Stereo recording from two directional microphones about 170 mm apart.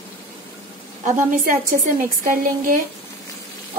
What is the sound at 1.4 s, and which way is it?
A woman's voice, 55° right (ahead or behind).